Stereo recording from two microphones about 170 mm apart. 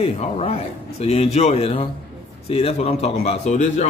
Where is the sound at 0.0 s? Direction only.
35° left (ahead or behind).